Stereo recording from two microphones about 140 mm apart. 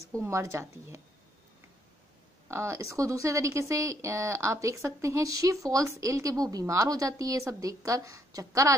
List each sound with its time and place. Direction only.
0.1 s speech: 20° right (ahead or behind)
2.4 s speech: 20° right (ahead or behind)